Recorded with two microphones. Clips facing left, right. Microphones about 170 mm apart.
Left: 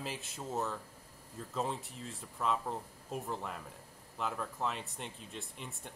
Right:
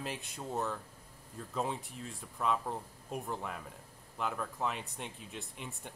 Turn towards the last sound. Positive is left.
turn(degrees=0)  # may be behind; listen again after turning